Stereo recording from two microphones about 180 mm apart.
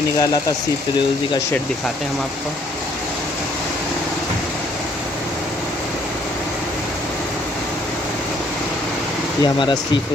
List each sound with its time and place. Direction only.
9.4 s speech: 25° left (ahead or behind)